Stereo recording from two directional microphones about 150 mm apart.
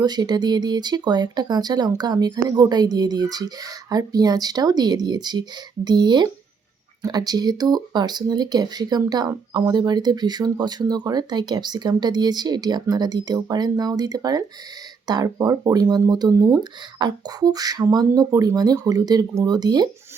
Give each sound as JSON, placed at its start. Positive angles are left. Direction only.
{"t": 0.0, "sound": "speech", "side_deg": -25}